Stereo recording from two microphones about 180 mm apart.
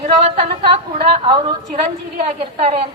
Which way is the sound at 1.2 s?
25° right (ahead or behind).